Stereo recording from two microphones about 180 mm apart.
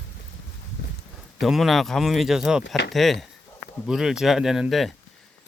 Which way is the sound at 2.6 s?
75° left (ahead or behind).